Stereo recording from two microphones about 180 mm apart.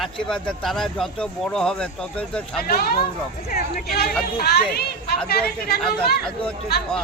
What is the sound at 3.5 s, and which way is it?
Speech, 60° left (ahead or behind).